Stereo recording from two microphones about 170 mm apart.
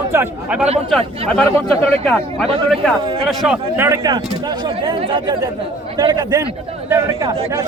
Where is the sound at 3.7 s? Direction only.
15° right (ahead or behind).